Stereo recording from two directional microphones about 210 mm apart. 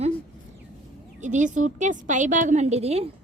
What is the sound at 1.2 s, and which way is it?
A woman's voice, 35° right (ahead or behind).